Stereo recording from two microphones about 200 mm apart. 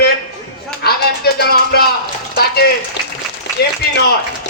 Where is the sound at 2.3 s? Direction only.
50° left (ahead or behind).